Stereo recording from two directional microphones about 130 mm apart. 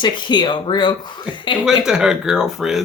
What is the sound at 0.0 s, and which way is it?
Speech, 35° left (ahead or behind).